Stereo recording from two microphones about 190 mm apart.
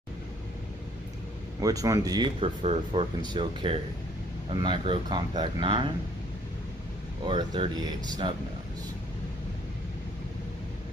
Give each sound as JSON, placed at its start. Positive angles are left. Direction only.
{"t": 1.6, "sound": "speech", "side_deg": -20}
{"t": 7.2, "sound": "speech", "side_deg": -25}